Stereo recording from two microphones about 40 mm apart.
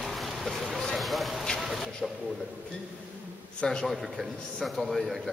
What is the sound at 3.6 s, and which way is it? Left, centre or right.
Speech, centre.